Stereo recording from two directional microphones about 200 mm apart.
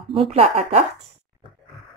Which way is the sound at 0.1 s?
30° right (ahead or behind).